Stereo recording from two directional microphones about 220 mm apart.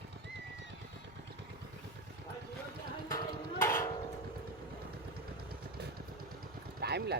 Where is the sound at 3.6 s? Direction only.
10° left (ahead or behind).